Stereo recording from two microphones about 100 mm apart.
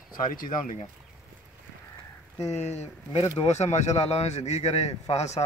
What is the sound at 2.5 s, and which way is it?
A man's voice, 90° left.